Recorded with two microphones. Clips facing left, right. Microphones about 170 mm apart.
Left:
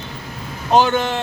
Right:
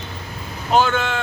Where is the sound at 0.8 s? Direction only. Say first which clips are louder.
Left 2 dB; 35° left (ahead or behind).